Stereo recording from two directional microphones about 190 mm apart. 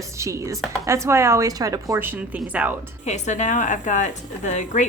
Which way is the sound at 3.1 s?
40° left (ahead or behind).